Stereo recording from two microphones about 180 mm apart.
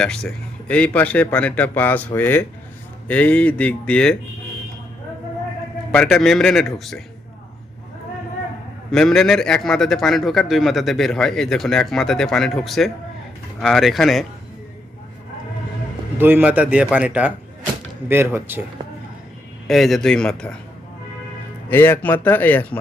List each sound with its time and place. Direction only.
0.0 s speech: 5° left (ahead or behind)
5.9 s a man's voice: 5° left (ahead or behind)
8.9 s a man's voice: 5° left (ahead or behind)
16.1 s a man's voice: 10° right (ahead or behind)
19.6 s a man's voice: centre (ahead or behind)
21.7 s speech: 10° left (ahead or behind)